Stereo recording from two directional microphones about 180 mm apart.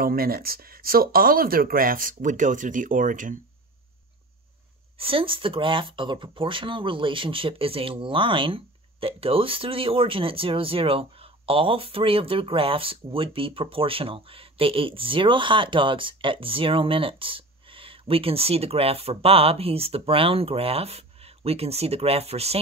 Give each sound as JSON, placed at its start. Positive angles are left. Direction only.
{"t": 0.0, "sound": "speech", "side_deg": -55}
{"t": 4.9, "sound": "speech", "side_deg": -30}